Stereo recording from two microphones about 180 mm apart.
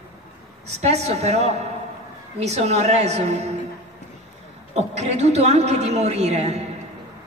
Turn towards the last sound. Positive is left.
turn(degrees=-35)  # may be behind; listen again after turning